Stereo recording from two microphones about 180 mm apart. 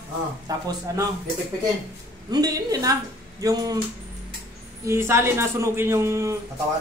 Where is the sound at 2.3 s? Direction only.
20° right (ahead or behind).